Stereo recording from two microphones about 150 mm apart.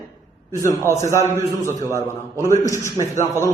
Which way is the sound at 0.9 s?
20° left (ahead or behind).